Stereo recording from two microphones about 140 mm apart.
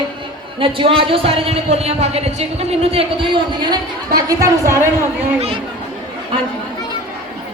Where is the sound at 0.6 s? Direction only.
40° right (ahead or behind).